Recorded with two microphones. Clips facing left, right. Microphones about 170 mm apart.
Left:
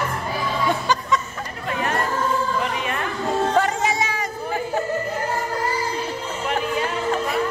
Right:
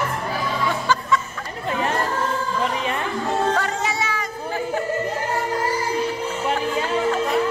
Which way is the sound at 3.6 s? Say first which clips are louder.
Left 4 dB; 15° left (ahead or behind).